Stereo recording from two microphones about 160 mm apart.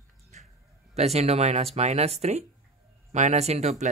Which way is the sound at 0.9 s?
40° right (ahead or behind).